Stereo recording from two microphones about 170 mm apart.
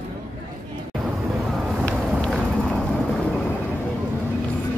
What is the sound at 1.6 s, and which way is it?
Vehicle, centre (ahead or behind).